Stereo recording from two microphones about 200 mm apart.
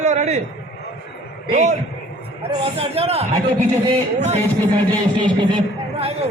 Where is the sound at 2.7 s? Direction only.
30° right (ahead or behind).